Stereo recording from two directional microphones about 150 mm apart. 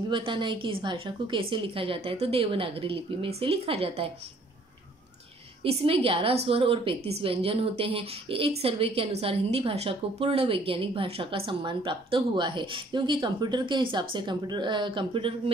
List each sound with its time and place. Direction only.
0.1 s a woman's voice: 35° right (ahead or behind)
5.6 s a woman's voice: 40° right (ahead or behind)